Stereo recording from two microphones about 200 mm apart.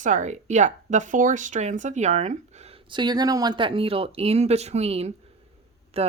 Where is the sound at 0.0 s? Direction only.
40° right (ahead or behind).